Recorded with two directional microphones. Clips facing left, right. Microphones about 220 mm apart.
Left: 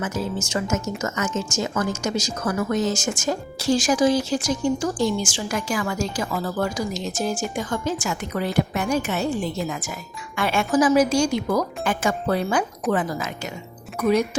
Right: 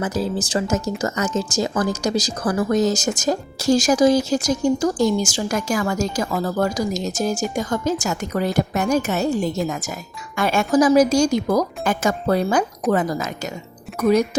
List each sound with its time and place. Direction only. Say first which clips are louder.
0.0 s speech: right 4 dB; 35° right (ahead or behind)